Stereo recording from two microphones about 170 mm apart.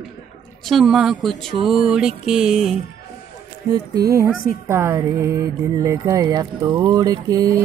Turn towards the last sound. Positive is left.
turn(degrees=-20)  # may be behind; listen again after turning